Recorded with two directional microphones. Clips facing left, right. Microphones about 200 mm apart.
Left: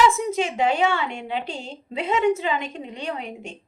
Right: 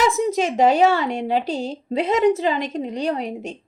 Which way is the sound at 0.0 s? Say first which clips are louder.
Right 1 dB; 40° right (ahead or behind).